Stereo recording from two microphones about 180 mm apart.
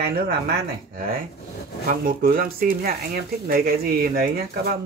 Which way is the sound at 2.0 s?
55° right (ahead or behind).